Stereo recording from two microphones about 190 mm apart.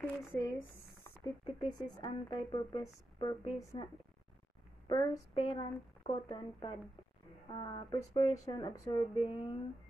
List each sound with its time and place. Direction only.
0.0 s speech: 15° left (ahead or behind)